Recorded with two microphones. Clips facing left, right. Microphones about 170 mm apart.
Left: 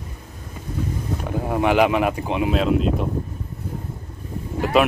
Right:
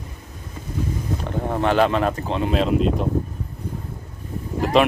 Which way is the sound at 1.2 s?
10° left (ahead or behind).